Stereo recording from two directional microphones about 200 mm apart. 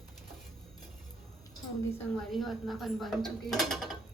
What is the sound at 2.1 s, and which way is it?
Mechanisms, centre (ahead or behind).